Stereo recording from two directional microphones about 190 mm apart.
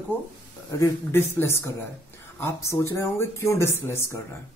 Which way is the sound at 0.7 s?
15° left (ahead or behind).